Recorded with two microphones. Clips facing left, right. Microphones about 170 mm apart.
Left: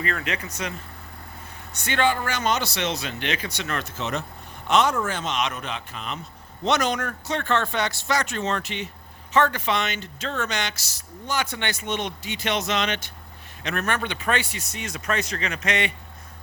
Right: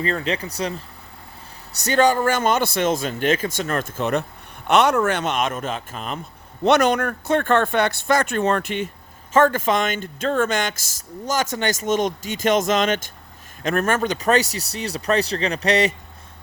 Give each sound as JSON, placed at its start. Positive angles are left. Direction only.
{"t": 0.0, "sound": "speech", "side_deg": -30}
{"t": 1.7, "sound": "speech", "side_deg": -40}
{"t": 4.7, "sound": "speech", "side_deg": -65}
{"t": 6.7, "sound": "speech", "side_deg": -60}